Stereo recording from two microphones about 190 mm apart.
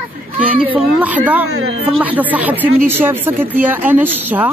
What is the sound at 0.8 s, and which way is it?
Speech, 10° right (ahead or behind).